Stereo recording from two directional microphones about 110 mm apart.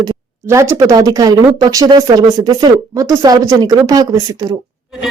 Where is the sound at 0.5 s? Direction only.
25° right (ahead or behind).